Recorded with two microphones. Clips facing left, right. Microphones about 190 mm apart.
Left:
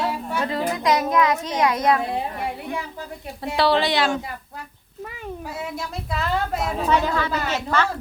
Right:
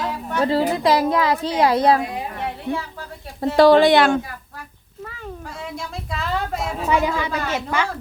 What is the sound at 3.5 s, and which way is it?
Speech, 45° right (ahead or behind).